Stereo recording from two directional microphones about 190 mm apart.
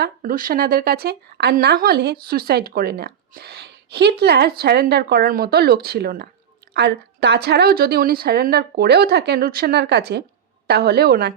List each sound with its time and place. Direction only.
0.0 s speech: 50° right (ahead or behind)